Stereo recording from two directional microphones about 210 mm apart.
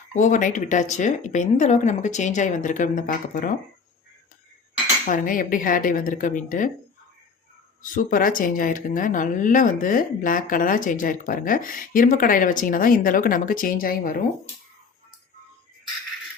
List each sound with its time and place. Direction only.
0.1 s speech: 35° left (ahead or behind)
5.0 s speech: 40° left (ahead or behind)
7.8 s speech: 40° left (ahead or behind)